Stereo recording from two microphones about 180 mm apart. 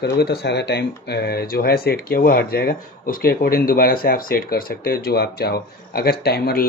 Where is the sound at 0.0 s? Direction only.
65° left (ahead or behind).